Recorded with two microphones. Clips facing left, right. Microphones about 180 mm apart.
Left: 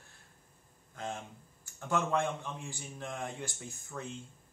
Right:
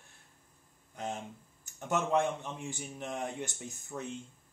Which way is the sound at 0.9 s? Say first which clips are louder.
Right 2 dB; 20° right (ahead or behind).